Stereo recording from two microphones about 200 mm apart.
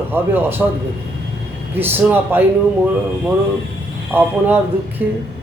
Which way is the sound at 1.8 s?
10° right (ahead or behind).